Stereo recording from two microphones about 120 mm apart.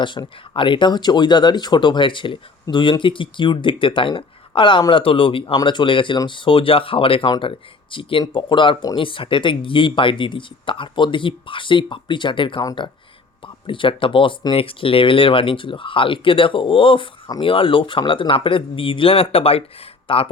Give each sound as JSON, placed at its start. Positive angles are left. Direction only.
{"t": 0.0, "sound": "speech", "side_deg": 40}